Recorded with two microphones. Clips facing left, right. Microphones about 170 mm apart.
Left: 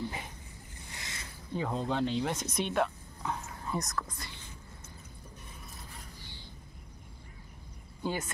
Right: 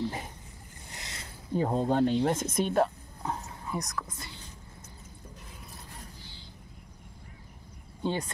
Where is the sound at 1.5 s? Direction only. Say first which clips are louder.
Right 6 dB; 45° right (ahead or behind).